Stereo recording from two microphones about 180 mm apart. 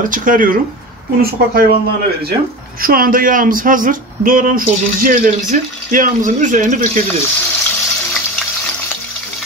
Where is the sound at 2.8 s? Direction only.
55° right (ahead or behind).